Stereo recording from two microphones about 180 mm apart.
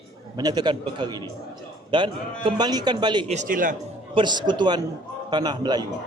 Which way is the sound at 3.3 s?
45° right (ahead or behind).